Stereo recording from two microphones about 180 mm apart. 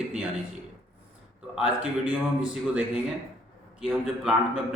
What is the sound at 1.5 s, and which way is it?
Speech, 5° right (ahead or behind).